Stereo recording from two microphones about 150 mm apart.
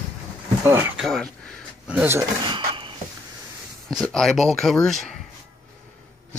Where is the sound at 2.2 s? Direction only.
30° right (ahead or behind).